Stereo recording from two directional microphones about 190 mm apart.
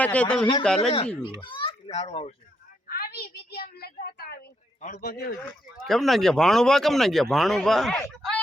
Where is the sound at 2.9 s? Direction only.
55° left (ahead or behind).